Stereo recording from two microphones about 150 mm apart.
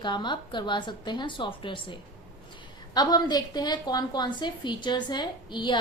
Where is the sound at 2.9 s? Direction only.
25° left (ahead or behind).